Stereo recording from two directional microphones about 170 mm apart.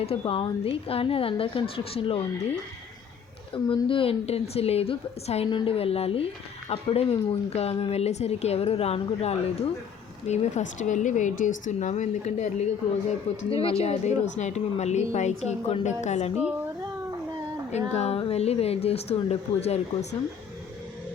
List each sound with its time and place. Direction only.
0.0 s a woman's voice: 35° left (ahead or behind)
16.3 s speech: 5° right (ahead or behind)
17.7 s a woman's voice: 40° left (ahead or behind)